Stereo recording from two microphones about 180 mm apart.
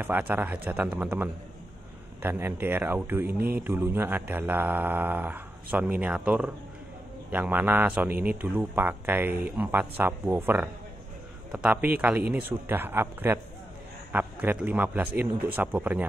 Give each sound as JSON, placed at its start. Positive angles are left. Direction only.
{"t": 0.0, "sound": "speech", "side_deg": -10}
{"t": 2.2, "sound": "speech", "side_deg": -10}
{"t": 3.3, "sound": "mantra", "side_deg": -60}
{"t": 3.6, "sound": "speech", "side_deg": -10}